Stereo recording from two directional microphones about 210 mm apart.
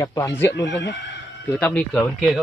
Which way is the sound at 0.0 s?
15° left (ahead or behind).